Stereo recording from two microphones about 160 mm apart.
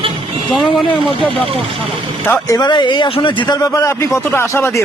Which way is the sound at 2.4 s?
25° left (ahead or behind).